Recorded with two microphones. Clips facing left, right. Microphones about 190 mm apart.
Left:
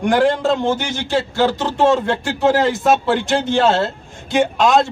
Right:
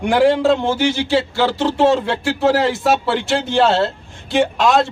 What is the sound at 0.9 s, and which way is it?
Speech, 45° left (ahead or behind).